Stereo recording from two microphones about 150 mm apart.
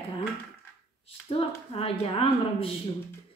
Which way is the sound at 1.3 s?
40° left (ahead or behind).